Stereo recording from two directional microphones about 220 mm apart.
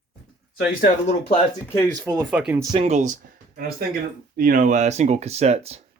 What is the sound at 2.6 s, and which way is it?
Speech, 20° right (ahead or behind).